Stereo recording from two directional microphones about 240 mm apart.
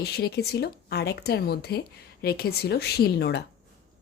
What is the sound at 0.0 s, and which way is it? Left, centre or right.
Speech, left.